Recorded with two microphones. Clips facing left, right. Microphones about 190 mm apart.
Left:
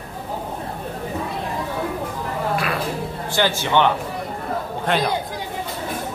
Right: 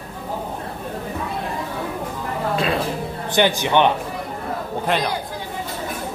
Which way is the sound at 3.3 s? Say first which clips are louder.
Right 2 dB; 20° right (ahead or behind).